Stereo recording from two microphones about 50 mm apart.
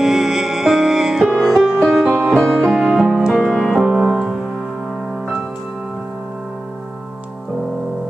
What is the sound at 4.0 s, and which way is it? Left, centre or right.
Music, centre.